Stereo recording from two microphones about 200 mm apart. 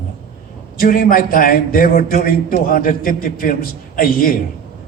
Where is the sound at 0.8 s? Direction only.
45° left (ahead or behind).